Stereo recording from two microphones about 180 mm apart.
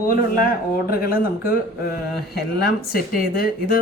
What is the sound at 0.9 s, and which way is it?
Speech, 55° left (ahead or behind).